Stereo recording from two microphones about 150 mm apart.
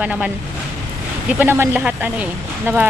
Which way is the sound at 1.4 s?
15° right (ahead or behind).